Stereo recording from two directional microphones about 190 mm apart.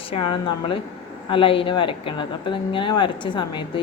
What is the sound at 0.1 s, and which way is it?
A woman's voice, 30° left (ahead or behind).